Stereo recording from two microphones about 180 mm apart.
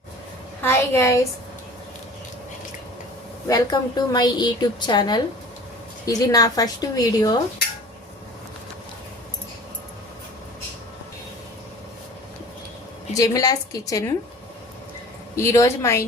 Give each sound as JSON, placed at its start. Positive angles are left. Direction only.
{"t": 0.6, "sound": "speech", "side_deg": 15}
{"t": 3.5, "sound": "a woman's voice", "side_deg": 20}
{"t": 13.1, "sound": "a woman's voice", "side_deg": 20}
{"t": 15.4, "sound": "speech", "side_deg": 15}